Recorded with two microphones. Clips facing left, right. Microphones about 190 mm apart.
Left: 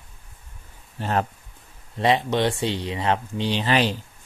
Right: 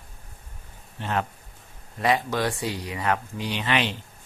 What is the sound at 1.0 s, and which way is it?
Speech, 40° left (ahead or behind).